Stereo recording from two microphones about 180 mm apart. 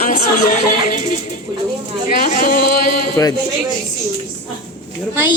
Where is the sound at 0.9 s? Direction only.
45° left (ahead or behind).